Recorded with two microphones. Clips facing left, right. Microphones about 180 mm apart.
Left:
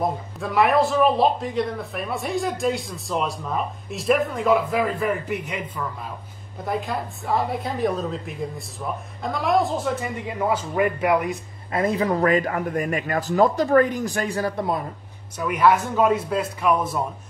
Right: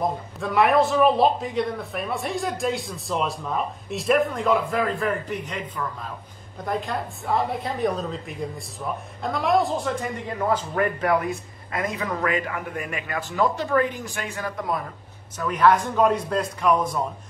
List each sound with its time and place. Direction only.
0.4 s speech: centre (ahead or behind)
11.7 s speech: 30° left (ahead or behind)
15.3 s speech: 10° left (ahead or behind)